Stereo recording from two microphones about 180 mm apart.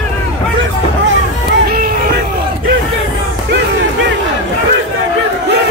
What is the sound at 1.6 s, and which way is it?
Music, 55° right (ahead or behind).